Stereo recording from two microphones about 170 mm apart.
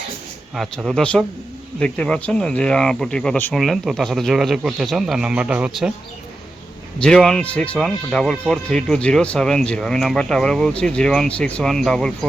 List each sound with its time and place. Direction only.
0.5 s speech: centre (ahead or behind)
7.0 s speech: 5° left (ahead or behind)